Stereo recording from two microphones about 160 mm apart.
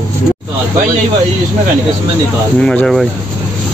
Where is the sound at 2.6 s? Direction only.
5° left (ahead or behind).